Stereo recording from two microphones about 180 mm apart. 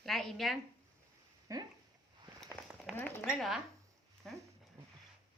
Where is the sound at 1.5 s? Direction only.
20° right (ahead or behind).